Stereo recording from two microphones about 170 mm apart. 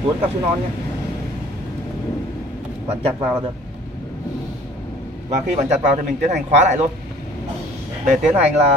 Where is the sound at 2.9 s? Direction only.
35° right (ahead or behind).